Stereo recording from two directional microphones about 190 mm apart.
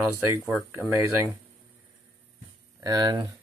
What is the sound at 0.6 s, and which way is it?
Speech, 10° right (ahead or behind).